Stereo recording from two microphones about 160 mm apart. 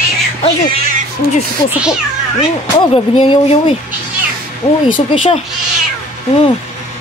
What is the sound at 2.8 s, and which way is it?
Speech, 30° left (ahead or behind).